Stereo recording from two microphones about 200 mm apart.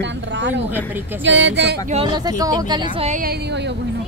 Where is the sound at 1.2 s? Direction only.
65° right (ahead or behind).